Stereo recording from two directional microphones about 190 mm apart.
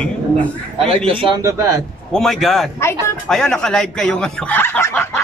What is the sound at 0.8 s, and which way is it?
Speech, 30° right (ahead or behind).